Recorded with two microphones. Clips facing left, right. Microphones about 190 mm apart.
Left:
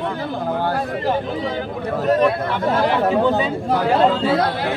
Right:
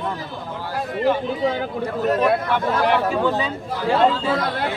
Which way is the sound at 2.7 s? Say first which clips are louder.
Left 3 dB; 20° left (ahead or behind).